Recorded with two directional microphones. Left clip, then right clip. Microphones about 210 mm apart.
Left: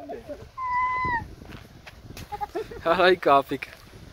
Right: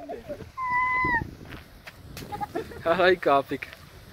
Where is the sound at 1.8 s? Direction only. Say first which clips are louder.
Right 2 dB; 35° right (ahead or behind).